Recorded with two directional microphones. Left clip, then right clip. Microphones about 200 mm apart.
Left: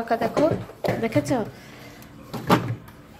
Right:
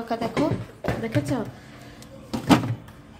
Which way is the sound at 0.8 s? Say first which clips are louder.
Left 4 dB; 15° left (ahead or behind).